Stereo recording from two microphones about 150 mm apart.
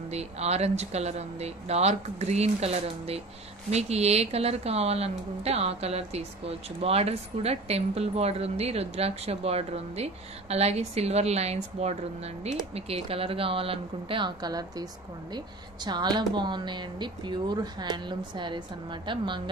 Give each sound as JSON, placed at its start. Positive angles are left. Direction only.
{"t": 0.1, "sound": "a woman's voice", "side_deg": -45}